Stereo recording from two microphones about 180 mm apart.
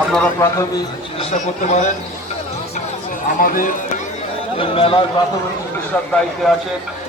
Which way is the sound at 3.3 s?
50° left (ahead or behind).